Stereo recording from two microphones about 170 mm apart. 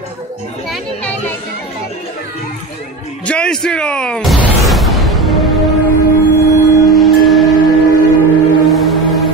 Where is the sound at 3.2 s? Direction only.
5° left (ahead or behind).